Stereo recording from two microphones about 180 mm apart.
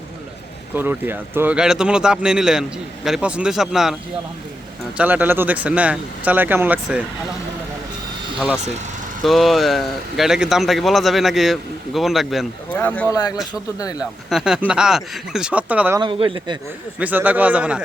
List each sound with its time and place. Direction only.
0.8 s speech: 10° right (ahead or behind)
4.9 s speech: 10° right (ahead or behind)
9.2 s speech: centre (ahead or behind)
13.1 s speech: 20° left (ahead or behind)
14.0 s speech: 5° right (ahead or behind)
16.0 s speech: 25° right (ahead or behind)
17.0 s speech: 10° right (ahead or behind)